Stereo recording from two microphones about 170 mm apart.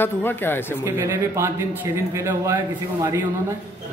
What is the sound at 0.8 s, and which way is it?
Speech, 15° right (ahead or behind).